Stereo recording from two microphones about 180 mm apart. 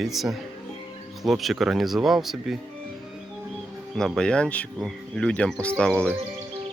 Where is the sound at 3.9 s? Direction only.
Centre (ahead or behind).